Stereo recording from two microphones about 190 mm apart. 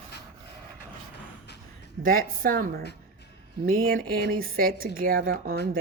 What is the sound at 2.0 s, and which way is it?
A woman's voice, 50° right (ahead or behind).